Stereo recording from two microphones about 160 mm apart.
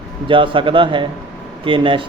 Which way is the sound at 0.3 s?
30° right (ahead or behind).